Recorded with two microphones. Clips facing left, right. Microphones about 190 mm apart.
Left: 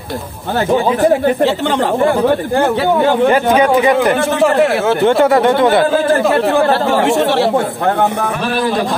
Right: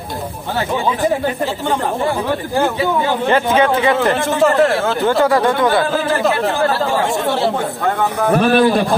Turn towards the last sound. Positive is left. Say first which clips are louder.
# left 5 dB
turn(degrees=75)  # may be behind; listen again after turning